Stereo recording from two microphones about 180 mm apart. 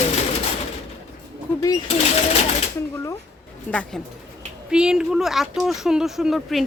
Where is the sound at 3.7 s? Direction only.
5° left (ahead or behind).